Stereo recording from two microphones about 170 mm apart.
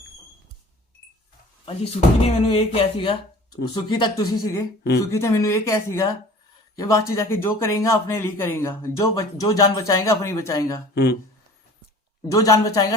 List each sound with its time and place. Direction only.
1.6 s a man's voice: 35° left (ahead or behind); by 10.8 s 20° left (ahead or behind)
10.9 s speech: 65° left (ahead or behind)
12.3 s speech: 20° left (ahead or behind)